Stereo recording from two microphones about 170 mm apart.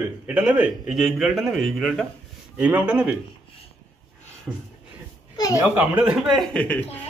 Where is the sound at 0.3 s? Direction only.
10° right (ahead or behind).